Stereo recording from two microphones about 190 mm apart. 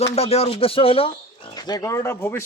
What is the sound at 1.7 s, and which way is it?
Speech, 20° left (ahead or behind).